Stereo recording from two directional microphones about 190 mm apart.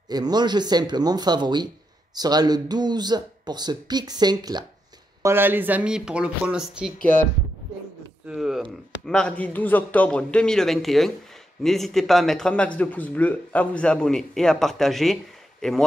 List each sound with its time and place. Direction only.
0.1 s speech: 20° right (ahead or behind)
5.2 s speech: 10° right (ahead or behind)
8.3 s speech: centre (ahead or behind)